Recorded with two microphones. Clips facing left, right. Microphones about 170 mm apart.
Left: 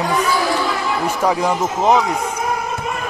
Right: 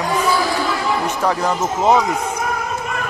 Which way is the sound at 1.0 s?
10° left (ahead or behind).